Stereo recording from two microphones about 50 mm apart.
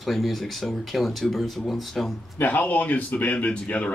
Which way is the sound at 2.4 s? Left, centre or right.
Left.